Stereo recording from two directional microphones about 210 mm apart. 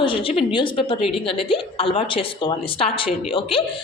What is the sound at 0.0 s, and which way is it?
A woman's voice, 25° left (ahead or behind).